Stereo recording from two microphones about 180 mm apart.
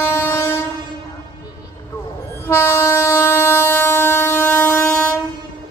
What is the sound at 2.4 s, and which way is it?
Train, 15° left (ahead or behind).